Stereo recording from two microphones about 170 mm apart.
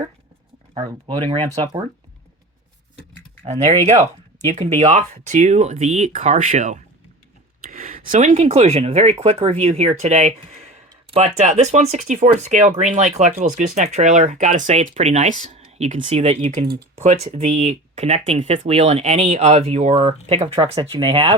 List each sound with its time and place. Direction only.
0.7 s speech: 25° right (ahead or behind)
3.4 s speech: 40° right (ahead or behind)